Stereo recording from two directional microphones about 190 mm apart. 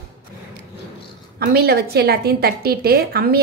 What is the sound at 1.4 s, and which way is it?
A woman's voice, 55° right (ahead or behind).